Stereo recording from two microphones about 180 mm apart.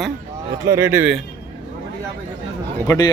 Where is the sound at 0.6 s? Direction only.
15° right (ahead or behind).